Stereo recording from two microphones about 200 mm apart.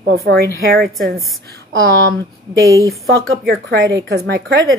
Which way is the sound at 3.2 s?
55° right (ahead or behind).